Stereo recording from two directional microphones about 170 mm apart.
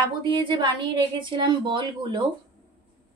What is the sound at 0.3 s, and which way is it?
A woman's voice, 30° right (ahead or behind).